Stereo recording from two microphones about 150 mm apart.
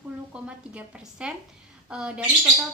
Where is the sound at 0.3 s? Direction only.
10° right (ahead or behind).